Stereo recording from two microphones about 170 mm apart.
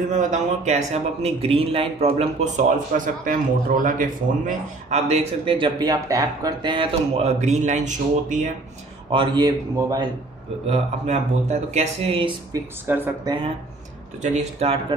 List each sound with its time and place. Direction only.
0.1 s a man's voice: 45° right (ahead or behind)
9.1 s speech: 30° right (ahead or behind)
10.7 s a man's voice: 40° right (ahead or behind)
12.8 s speech: 10° right (ahead or behind)
13.2 s speech: 25° right (ahead or behind)
14.2 s a man's voice: 40° right (ahead or behind)